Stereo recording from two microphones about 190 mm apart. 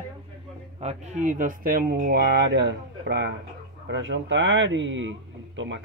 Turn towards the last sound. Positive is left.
turn(degrees=-75)  # may be behind; listen again after turning